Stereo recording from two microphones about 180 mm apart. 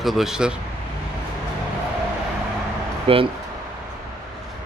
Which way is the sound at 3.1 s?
30° right (ahead or behind).